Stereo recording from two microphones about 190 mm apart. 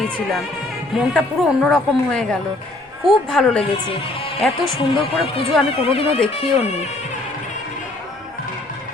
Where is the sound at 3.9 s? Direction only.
30° left (ahead or behind).